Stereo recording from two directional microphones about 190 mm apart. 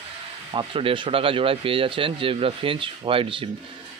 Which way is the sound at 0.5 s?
25° right (ahead or behind).